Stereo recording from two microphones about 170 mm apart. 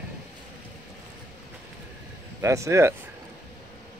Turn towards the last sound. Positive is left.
turn(degrees=-15)  # may be behind; listen again after turning